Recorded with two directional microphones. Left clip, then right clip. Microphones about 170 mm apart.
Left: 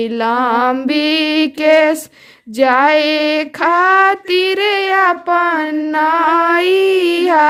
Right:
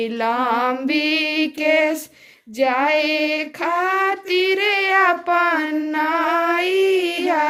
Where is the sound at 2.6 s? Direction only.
45° left (ahead or behind).